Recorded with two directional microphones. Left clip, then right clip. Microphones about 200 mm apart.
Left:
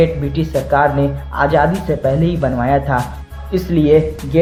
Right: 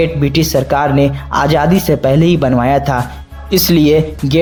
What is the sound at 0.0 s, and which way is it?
Speech, 45° right (ahead or behind).